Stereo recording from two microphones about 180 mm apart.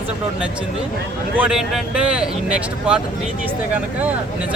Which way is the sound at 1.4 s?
5° right (ahead or behind).